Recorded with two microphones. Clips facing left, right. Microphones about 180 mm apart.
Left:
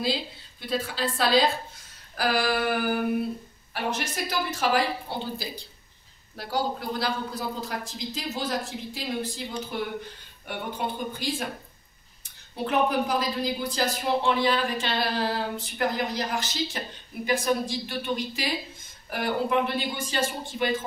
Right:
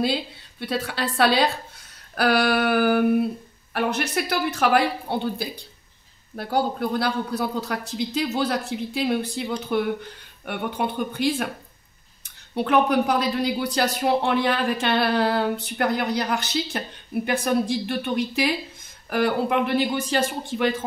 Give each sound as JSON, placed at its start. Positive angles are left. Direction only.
{"t": 0.0, "sound": "a woman's voice", "side_deg": -60}
{"t": 12.5, "sound": "speech", "side_deg": -65}